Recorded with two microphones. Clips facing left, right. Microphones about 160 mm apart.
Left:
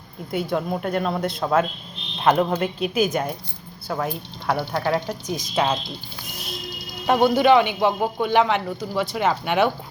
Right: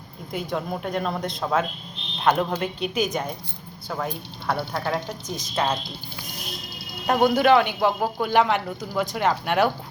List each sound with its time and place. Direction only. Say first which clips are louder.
0.3 s a man's voice: left 4 dB; 5° left (ahead or behind)
7.1 s a man's voice: left 2 dB; centre (ahead or behind)